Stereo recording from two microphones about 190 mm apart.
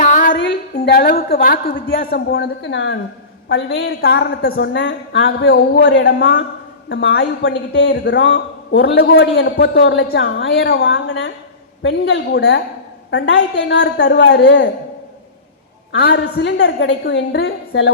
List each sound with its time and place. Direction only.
0.0 s female singing: 45° left (ahead or behind)
0.3 s a woman's voice: 60° left (ahead or behind)
4.5 s a woman's voice: 75° left (ahead or behind)
13.1 s a woman's voice: 75° left (ahead or behind)
15.9 s a woman's voice: 65° left (ahead or behind)